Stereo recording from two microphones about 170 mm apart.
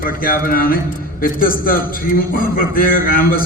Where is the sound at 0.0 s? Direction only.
55° left (ahead or behind).